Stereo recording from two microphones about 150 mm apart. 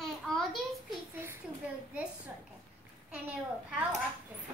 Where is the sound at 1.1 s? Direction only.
15° right (ahead or behind).